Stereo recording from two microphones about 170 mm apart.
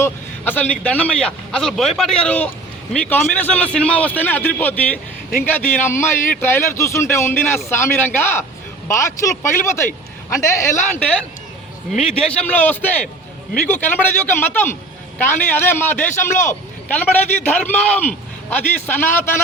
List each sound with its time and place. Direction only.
0.0 s a man's voice: 10° left (ahead or behind)